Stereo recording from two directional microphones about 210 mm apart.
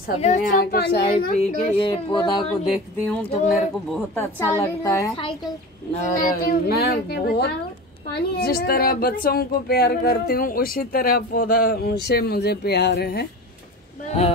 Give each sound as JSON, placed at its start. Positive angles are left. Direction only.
{"t": 0.2, "sound": "a woman's voice", "side_deg": 35}
{"t": 1.3, "sound": "a woman's voice", "side_deg": 25}
{"t": 3.1, "sound": "speech", "side_deg": 0}
{"t": 4.2, "sound": "a woman's voice", "side_deg": 10}
{"t": 5.9, "sound": "a woman's voice", "side_deg": 35}